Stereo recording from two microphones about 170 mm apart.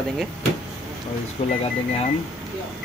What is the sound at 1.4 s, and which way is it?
Speech, 40° left (ahead or behind).